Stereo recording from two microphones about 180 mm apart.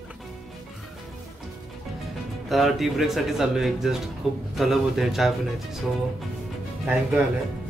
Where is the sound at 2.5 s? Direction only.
Centre (ahead or behind).